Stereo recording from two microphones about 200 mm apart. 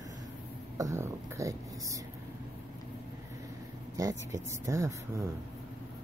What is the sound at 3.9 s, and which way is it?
Speech, 15° right (ahead or behind).